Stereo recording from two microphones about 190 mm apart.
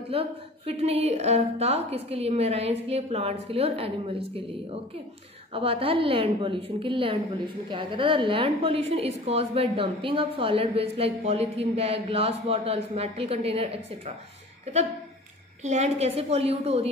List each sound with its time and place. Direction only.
0.1 s a woman's voice: 30° right (ahead or behind)
5.5 s a woman's voice: 30° right (ahead or behind)
15.6 s a woman's voice: 35° right (ahead or behind)